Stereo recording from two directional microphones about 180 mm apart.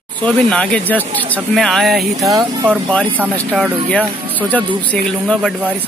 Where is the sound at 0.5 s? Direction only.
5° left (ahead or behind).